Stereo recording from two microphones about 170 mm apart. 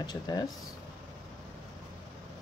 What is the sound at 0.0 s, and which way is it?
Speech, 25° left (ahead or behind).